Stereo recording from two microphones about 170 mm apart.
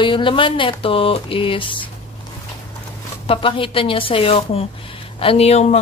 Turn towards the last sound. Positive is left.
turn(degrees=40)  # may be behind; listen again after turning